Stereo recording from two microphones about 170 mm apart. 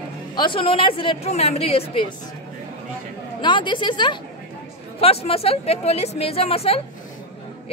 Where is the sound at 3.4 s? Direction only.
25° left (ahead or behind).